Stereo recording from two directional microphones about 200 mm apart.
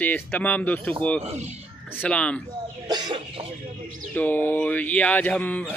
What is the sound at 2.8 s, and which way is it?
Chicken, 20° right (ahead or behind).